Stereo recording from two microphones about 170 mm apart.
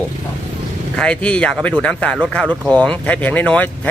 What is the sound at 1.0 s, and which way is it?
Speech, 5° left (ahead or behind).